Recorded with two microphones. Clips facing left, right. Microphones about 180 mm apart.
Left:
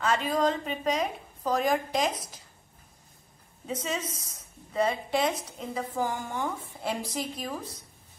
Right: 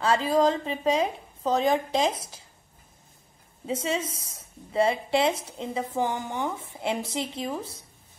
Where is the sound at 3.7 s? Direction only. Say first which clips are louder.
Right 4 dB; 30° right (ahead or behind).